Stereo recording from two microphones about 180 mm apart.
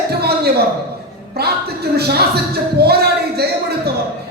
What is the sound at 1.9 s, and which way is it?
Speech, 60° right (ahead or behind).